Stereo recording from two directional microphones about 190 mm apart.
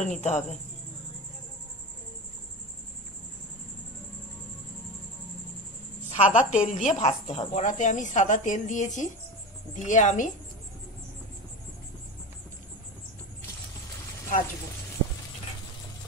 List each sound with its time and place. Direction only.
0.0 s a woman's voice: 40° left (ahead or behind)
6.0 s a woman's voice: 40° left (ahead or behind)